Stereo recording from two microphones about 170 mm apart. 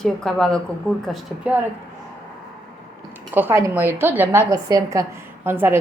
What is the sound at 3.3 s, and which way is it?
A woman's voice, 15° right (ahead or behind).